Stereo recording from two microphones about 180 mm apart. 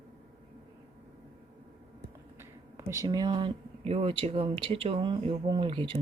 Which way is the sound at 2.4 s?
15° right (ahead or behind).